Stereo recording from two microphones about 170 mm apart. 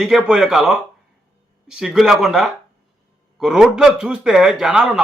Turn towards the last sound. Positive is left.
turn(degrees=-5)  # may be behind; listen again after turning